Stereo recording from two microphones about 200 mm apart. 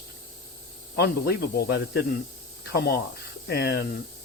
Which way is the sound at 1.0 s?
55° left (ahead or behind).